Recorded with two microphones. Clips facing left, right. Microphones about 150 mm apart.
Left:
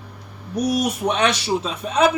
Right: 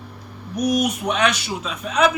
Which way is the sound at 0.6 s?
30° left (ahead or behind).